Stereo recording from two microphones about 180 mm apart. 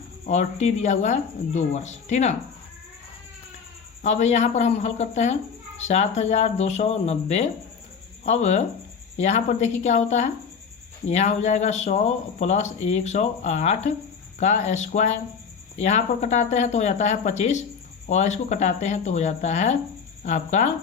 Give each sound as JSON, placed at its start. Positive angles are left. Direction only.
{"t": 0.3, "sound": "speech", "side_deg": 40}
{"t": 4.0, "sound": "speech", "side_deg": 40}